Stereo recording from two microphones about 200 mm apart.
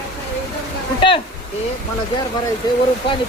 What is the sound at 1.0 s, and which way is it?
Speech, 25° left (ahead or behind).